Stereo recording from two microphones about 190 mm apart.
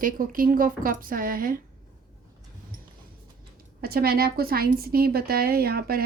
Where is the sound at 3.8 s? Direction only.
55° right (ahead or behind).